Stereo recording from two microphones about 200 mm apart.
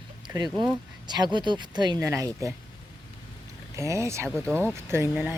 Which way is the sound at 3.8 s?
15° right (ahead or behind).